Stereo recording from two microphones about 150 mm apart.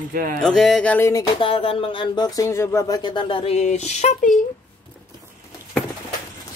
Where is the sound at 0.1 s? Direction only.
75° right (ahead or behind).